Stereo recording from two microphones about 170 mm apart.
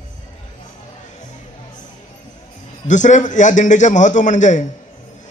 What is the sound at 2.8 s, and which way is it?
A man's voice, 45° left (ahead or behind).